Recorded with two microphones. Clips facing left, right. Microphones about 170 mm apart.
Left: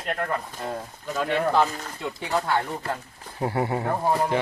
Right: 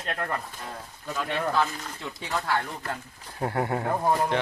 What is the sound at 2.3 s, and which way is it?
Speech, 25° left (ahead or behind).